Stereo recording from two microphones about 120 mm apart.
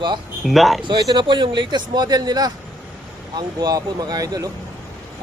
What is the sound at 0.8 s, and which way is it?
A man's voice, 40° right (ahead or behind).